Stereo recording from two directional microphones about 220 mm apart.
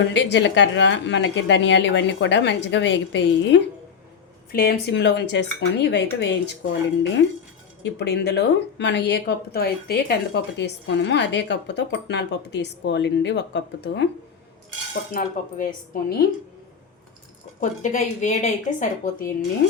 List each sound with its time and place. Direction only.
0.0 s speech: 55° left (ahead or behind)
7.8 s speech: 50° left (ahead or behind)
15.1 s a woman's voice: 40° left (ahead or behind)
17.6 s a woman's voice: 35° left (ahead or behind)